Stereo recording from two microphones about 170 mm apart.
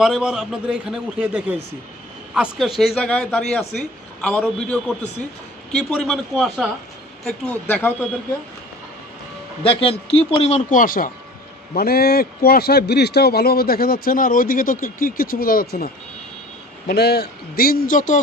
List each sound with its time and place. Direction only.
0.0 s a man's voice: 5° right (ahead or behind)
9.6 s a man's voice: 35° left (ahead or behind); by 15.9 s 65° left (ahead or behind)
16.9 s a man's voice: 75° left (ahead or behind); by 18.2 s 50° left (ahead or behind)